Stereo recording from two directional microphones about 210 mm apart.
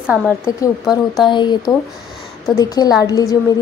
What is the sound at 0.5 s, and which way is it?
Speech, 15° left (ahead or behind).